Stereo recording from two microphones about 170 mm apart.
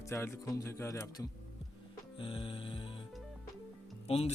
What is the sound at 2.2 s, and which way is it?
Speech, 30° left (ahead or behind).